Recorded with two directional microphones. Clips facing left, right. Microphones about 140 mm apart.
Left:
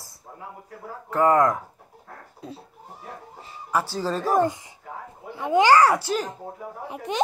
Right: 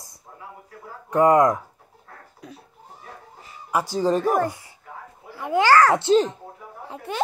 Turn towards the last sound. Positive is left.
turn(degrees=15)  # may be behind; listen again after turning